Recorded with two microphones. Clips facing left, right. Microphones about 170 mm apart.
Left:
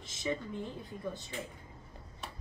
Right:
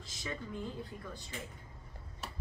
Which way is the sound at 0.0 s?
20° left (ahead or behind).